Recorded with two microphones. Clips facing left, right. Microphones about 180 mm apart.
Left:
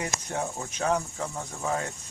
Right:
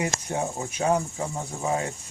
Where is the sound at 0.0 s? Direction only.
10° right (ahead or behind).